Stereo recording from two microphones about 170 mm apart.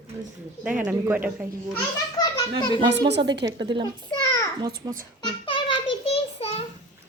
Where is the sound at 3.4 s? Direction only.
25° right (ahead or behind).